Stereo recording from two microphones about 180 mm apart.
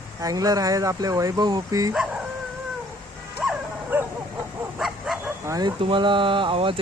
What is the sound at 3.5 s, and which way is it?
Bow-wow, 10° right (ahead or behind).